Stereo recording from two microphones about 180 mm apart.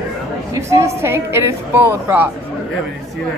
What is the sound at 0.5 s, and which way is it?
A woman's voice, 15° right (ahead or behind).